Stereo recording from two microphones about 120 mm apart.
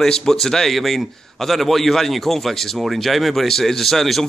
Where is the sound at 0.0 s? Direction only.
5° left (ahead or behind).